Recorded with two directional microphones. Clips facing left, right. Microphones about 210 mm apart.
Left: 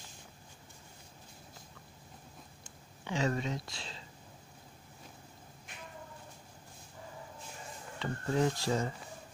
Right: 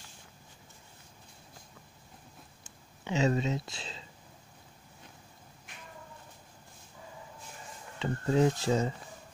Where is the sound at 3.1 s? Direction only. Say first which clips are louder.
Right 5 dB; 20° right (ahead or behind).